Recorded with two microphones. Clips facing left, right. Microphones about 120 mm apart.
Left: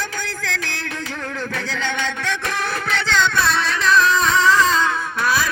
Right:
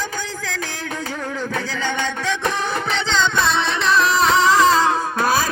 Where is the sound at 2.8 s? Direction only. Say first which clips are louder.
Left 2 dB; 20° right (ahead or behind).